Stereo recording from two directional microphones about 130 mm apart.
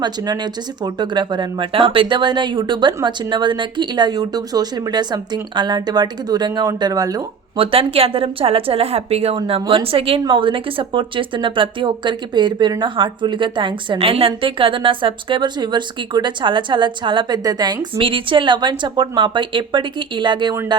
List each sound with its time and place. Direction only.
0.0 s speech: 35° right (ahead or behind)
7.5 s a woman's voice: 45° right (ahead or behind)
17.9 s speech: 45° right (ahead or behind)